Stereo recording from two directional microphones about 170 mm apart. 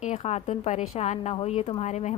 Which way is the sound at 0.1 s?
40° left (ahead or behind).